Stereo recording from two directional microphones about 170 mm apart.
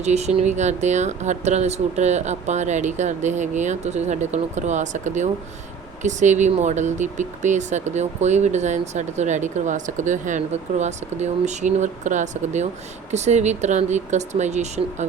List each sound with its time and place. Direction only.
0.0 s speech: 40° right (ahead or behind)